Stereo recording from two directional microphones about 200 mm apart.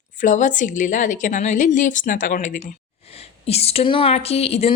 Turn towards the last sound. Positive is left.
turn(degrees=30)  # may be behind; listen again after turning